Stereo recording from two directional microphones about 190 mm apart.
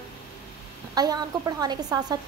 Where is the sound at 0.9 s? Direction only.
20° right (ahead or behind).